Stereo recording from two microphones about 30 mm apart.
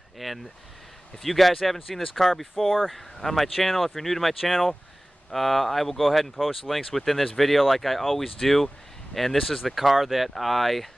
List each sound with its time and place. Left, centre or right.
0.2 s speech: centre
2.5 s speech: centre
2.9 s speech: centre
5.9 s speech: centre